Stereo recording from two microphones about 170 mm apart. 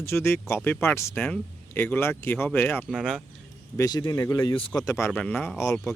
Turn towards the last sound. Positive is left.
turn(degrees=15)  # may be behind; listen again after turning